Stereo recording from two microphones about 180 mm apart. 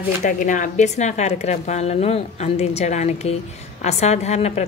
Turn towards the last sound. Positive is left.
turn(degrees=40)  # may be behind; listen again after turning